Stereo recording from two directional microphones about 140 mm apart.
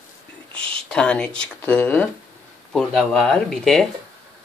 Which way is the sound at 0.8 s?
5° left (ahead or behind).